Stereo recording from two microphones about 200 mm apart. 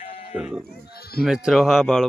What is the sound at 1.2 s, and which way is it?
Speech, centre (ahead or behind).